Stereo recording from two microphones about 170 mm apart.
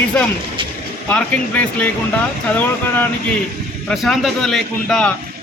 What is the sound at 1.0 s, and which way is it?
A man's voice, 10° left (ahead or behind).